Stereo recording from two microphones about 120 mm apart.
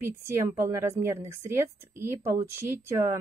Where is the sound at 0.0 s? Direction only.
20° right (ahead or behind).